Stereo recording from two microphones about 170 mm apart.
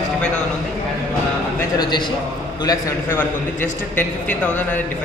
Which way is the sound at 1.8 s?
25° left (ahead or behind).